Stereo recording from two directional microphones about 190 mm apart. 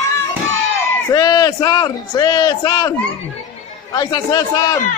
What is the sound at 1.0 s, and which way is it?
A man's voice, 20° left (ahead or behind).